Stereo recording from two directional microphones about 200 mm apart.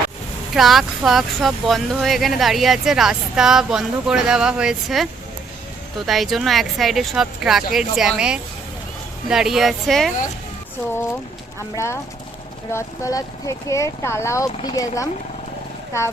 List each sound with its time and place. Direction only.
0.5 s speech: centre (ahead or behind)
6.1 s speech: centre (ahead or behind)
11.7 s speech: 15° left (ahead or behind)